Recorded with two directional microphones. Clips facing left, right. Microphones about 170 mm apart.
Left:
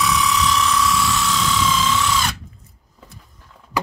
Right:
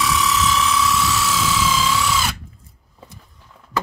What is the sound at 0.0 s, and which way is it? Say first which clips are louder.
Helicopter: even; centre (ahead or behind).